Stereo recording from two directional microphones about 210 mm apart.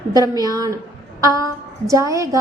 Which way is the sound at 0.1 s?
20° right (ahead or behind).